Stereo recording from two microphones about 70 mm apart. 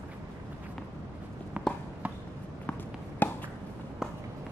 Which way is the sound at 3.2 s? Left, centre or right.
Left.